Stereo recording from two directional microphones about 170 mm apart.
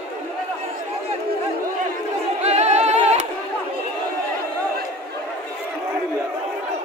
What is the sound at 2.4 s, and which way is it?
Music, 40° right (ahead or behind).